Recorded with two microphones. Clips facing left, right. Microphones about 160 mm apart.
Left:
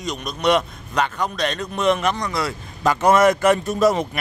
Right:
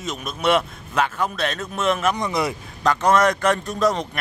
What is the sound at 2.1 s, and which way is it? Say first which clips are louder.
Speech: right 2 dB; 20° right (ahead or behind).